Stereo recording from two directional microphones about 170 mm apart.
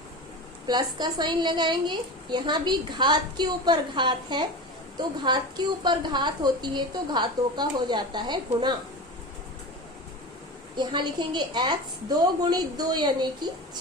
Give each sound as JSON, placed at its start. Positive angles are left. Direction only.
{"t": 0.7, "sound": "a woman's voice", "side_deg": -25}
{"t": 10.8, "sound": "a woman's voice", "side_deg": -25}